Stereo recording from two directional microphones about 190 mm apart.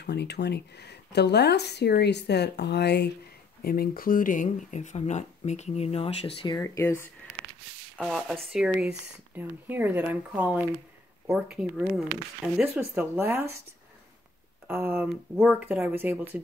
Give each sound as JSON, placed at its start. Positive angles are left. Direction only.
{"t": 0.0, "sound": "speech", "side_deg": 60}
{"t": 8.0, "sound": "speech", "side_deg": 0}
{"t": 14.7, "sound": "speech", "side_deg": -10}